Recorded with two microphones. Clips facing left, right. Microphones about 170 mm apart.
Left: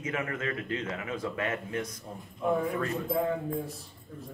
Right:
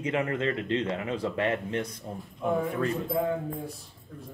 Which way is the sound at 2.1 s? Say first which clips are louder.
Even; centre (ahead or behind).